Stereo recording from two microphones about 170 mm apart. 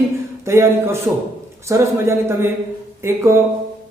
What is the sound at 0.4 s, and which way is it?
A man's voice, 15° right (ahead or behind).